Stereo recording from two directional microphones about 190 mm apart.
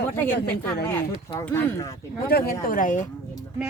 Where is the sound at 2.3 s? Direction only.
55° left (ahead or behind).